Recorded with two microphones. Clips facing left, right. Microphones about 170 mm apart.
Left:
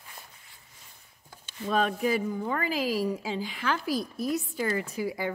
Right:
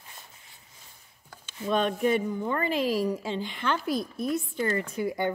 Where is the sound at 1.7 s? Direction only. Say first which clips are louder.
Right 2 dB; 5° left (ahead or behind).